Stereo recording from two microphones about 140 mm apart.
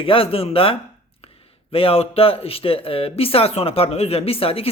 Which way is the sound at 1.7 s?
40° left (ahead or behind).